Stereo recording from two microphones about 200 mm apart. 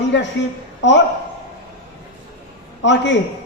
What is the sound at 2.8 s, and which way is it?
Speech, 65° left (ahead or behind).